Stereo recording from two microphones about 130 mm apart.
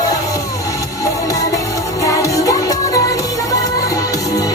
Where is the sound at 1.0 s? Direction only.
25° left (ahead or behind).